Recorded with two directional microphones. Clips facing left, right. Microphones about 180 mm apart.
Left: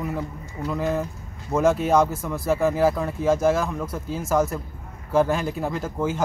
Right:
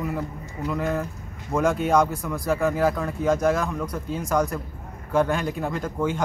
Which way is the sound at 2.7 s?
25° left (ahead or behind).